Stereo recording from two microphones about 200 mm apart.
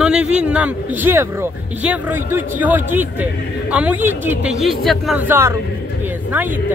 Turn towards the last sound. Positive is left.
turn(degrees=-10)  # may be behind; listen again after turning